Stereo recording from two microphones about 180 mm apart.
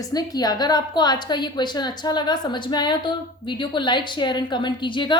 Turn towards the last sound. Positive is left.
turn(degrees=25)  # may be behind; listen again after turning